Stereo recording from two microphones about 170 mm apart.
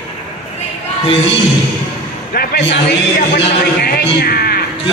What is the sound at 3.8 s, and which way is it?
Music, 60° left (ahead or behind).